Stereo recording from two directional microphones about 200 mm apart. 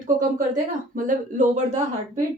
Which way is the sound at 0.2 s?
40° right (ahead or behind).